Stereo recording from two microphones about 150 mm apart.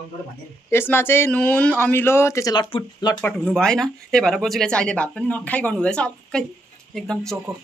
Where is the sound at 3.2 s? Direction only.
5° left (ahead or behind).